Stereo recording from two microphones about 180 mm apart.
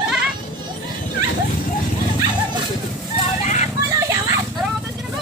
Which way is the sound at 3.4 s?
40° left (ahead or behind).